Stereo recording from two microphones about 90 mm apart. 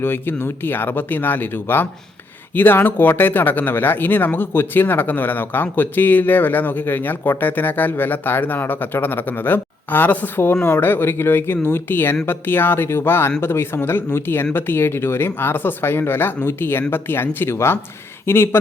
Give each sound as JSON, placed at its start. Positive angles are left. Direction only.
{"t": 0.0, "sound": "speech", "side_deg": 25}